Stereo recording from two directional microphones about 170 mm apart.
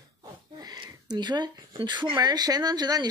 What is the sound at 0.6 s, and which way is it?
A woman's voice, 25° right (ahead or behind).